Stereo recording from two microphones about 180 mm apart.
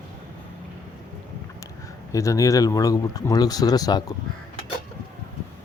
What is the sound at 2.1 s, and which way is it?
Speech, 20° left (ahead or behind).